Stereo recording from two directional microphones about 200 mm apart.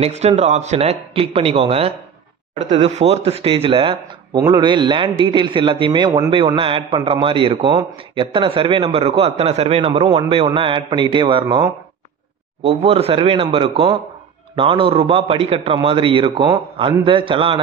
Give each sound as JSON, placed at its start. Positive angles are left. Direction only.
{"t": 0.0, "sound": "a man's voice", "side_deg": -30}